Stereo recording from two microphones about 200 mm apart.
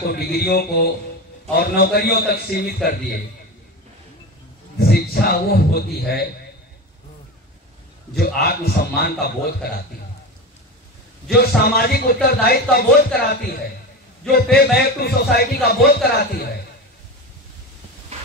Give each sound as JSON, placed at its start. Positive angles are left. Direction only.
{"t": 0.1, "sound": "a man's voice", "side_deg": 50}
{"t": 4.7, "sound": "a man's voice", "side_deg": 50}
{"t": 8.2, "sound": "a man's voice", "side_deg": 50}
{"t": 11.2, "sound": "a man's voice", "side_deg": 50}